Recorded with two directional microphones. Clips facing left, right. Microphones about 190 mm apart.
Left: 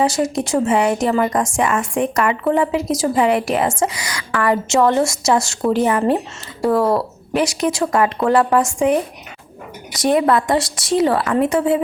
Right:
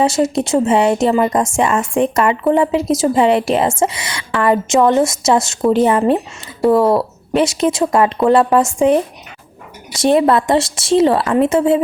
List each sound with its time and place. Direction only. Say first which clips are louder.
0.0 s a woman's voice: right 3 dB; 25° right (ahead or behind)